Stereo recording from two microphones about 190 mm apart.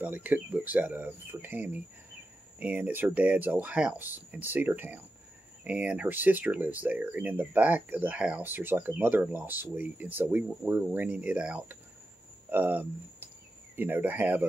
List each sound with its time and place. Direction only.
0.0 s speech: 10° right (ahead or behind)